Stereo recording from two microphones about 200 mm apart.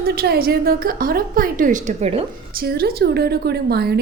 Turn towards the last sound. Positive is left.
turn(degrees=-50)  # may be behind; listen again after turning